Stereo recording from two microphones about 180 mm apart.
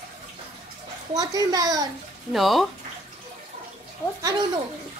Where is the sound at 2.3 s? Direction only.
Centre (ahead or behind).